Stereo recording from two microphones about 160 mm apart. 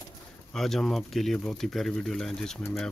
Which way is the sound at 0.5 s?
Centre (ahead or behind).